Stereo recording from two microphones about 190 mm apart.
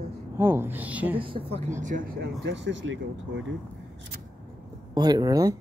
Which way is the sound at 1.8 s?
45° right (ahead or behind).